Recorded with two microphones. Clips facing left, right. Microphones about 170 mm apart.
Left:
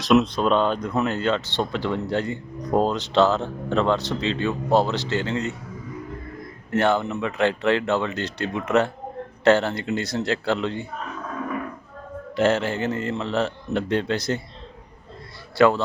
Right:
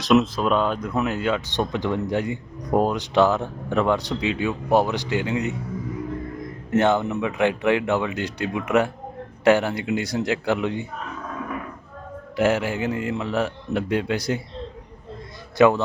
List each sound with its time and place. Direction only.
0.0 s speech: centre (ahead or behind)
6.7 s speech: 20° right (ahead or behind)
12.4 s speech: 10° right (ahead or behind)
15.5 s speech: 15° right (ahead or behind)